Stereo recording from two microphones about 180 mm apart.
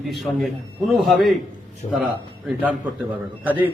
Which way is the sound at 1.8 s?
40° left (ahead or behind).